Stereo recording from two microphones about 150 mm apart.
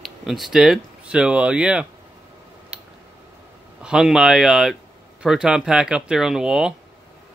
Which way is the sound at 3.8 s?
5° right (ahead or behind).